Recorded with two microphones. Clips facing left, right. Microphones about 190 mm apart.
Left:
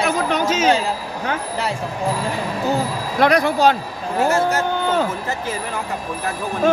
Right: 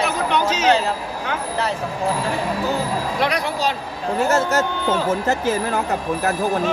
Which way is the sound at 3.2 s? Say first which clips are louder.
Left 10 dB; 50° left (ahead or behind).